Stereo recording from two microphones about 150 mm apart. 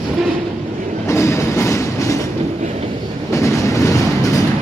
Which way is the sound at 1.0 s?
20° left (ahead or behind).